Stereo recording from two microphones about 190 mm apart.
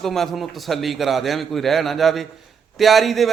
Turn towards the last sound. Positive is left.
turn(degrees=0)  # may be behind; listen again after turning